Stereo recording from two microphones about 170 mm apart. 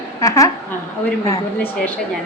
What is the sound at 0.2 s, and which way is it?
Speech, 20° left (ahead or behind).